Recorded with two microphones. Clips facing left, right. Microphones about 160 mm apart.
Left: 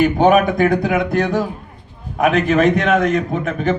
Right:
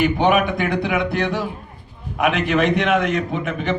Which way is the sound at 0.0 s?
45° left (ahead or behind).